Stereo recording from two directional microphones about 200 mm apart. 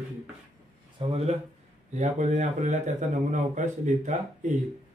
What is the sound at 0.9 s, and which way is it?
A man's voice, 30° right (ahead or behind).